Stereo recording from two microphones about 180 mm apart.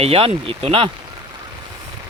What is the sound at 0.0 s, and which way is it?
Speech, 35° right (ahead or behind).